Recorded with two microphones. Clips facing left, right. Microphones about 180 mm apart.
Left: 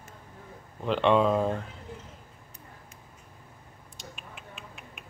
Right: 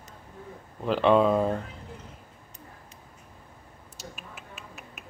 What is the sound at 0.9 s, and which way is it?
Speech, 5° right (ahead or behind).